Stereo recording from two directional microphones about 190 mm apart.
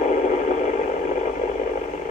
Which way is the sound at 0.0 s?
40° left (ahead or behind).